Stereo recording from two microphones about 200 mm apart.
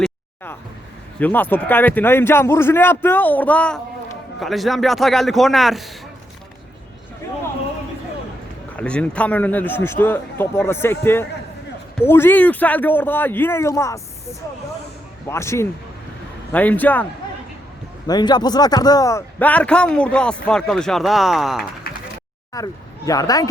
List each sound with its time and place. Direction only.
1.2 s a man's voice: 10° left (ahead or behind)
8.7 s a man's voice: 5° left (ahead or behind)
15.3 s a man's voice: 15° left (ahead or behind)
18.0 s speech: 20° left (ahead or behind); by 21.6 s centre (ahead or behind)
22.5 s a man's voice: 15° left (ahead or behind)